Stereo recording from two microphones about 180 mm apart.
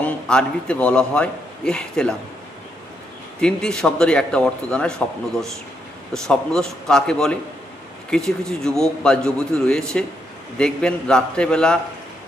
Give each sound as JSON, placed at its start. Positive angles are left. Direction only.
{"t": 0.0, "sound": "a man's voice", "side_deg": 5}
{"t": 3.4, "sound": "a man's voice", "side_deg": 5}